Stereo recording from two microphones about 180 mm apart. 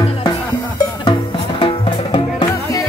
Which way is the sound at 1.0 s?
25° left (ahead or behind).